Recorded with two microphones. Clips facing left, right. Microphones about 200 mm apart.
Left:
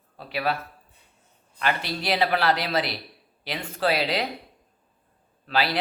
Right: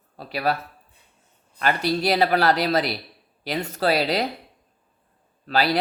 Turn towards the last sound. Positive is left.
turn(degrees=-40)  # may be behind; listen again after turning